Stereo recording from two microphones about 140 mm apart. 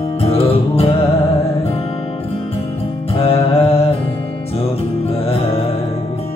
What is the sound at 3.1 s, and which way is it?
Music, 45° left (ahead or behind).